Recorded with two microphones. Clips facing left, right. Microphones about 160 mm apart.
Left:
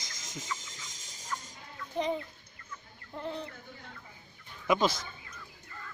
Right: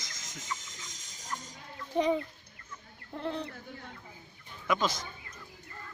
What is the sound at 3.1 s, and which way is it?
Speech, 70° right (ahead or behind).